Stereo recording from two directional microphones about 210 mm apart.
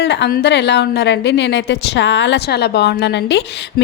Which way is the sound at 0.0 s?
55° left (ahead or behind).